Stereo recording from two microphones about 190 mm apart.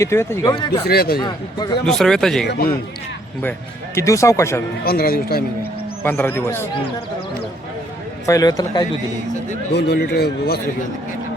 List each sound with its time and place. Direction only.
0.0 s speech: 15° left (ahead or behind)
0.9 s speech: 55° left (ahead or behind)
1.2 s a man's voice: 20° left (ahead or behind)
1.8 s speech: 5° left (ahead or behind)
2.5 s speech: 50° left (ahead or behind)
3.9 s speech: 15° left (ahead or behind)
4.9 s speech: 50° left (ahead or behind)
6.0 s speech: 10° left (ahead or behind)
8.3 s a man's voice: 20° left (ahead or behind)
9.7 s a man's voice: 60° left (ahead or behind)